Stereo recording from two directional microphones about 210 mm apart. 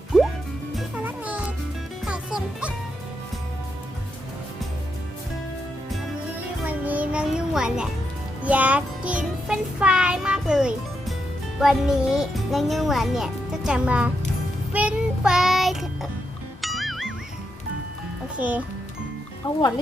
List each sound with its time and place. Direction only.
0.1 s music: centre (ahead or behind)
6.7 s music: 5° right (ahead or behind)
11.6 s a child's voice: centre (ahead or behind)
14.7 s child singing: 5° right (ahead or behind)
16.6 s music: centre (ahead or behind)
18.3 s speech: 5° right (ahead or behind)
19.4 s speech: 20° left (ahead or behind)